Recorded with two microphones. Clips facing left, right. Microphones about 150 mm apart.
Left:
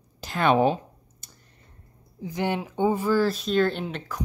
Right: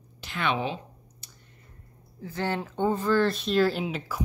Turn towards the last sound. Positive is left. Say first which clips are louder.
# right 1 dB
turn(degrees=-5)  # may be behind; listen again after turning